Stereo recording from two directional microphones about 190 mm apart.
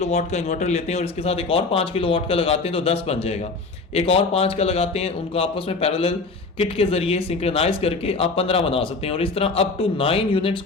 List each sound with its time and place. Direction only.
0.0 s speech: 35° left (ahead or behind)